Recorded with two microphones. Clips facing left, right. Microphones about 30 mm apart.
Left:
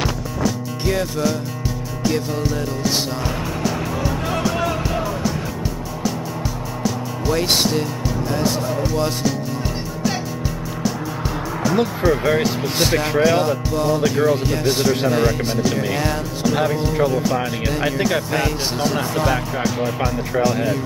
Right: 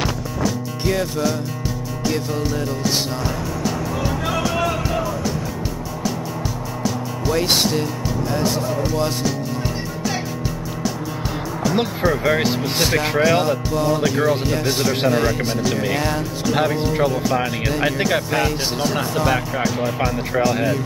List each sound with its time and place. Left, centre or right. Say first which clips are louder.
0.0 s music: even; centre
4.4 s music: even; centre
7.2 s speech: even; centre
12.0 s speech: even; centre